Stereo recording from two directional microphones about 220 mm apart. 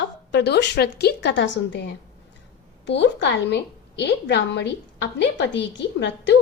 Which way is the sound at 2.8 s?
55° left (ahead or behind).